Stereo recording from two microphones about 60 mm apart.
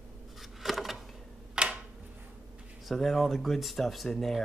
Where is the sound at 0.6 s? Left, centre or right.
Centre.